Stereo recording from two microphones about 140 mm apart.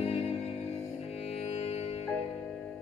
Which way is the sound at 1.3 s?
50° left (ahead or behind).